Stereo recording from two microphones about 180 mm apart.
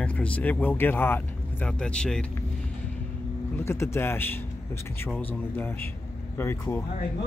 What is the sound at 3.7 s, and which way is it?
Speech, 15° left (ahead or behind).